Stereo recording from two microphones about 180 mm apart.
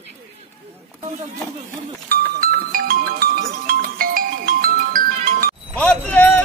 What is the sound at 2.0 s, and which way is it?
Music, 55° right (ahead or behind).